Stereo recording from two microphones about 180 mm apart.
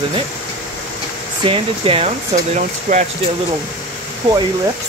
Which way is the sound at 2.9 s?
45° right (ahead or behind).